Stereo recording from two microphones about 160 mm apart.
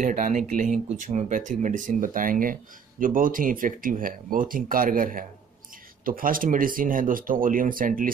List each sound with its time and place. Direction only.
0.0 s speech: 55° right (ahead or behind)